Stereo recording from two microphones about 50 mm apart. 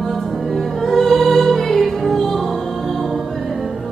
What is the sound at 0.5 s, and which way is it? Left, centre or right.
Music, centre.